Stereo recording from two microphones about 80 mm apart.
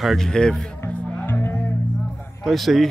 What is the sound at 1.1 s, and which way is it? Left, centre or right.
Music, left.